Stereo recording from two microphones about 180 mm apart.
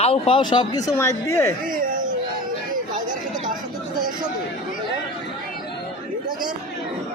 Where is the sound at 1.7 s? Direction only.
50° right (ahead or behind).